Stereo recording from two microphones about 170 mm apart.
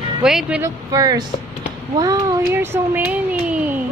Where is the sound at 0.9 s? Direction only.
20° right (ahead or behind).